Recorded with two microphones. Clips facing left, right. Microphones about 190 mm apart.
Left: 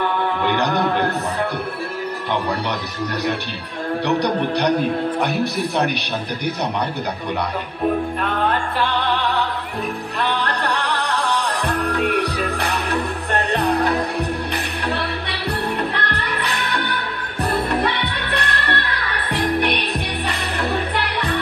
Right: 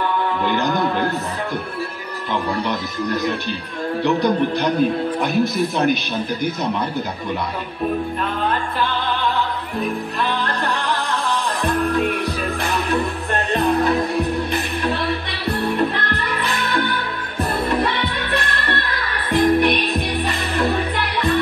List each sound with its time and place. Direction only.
4.0 s a man's voice: 70° left (ahead or behind)
10.2 s music: 65° left (ahead or behind)
18.3 s music: 70° left (ahead or behind)